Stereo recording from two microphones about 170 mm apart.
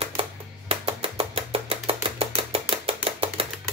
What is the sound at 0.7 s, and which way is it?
Chopping, 35° right (ahead or behind).